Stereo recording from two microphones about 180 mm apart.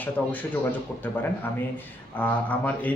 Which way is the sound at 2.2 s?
10° left (ahead or behind).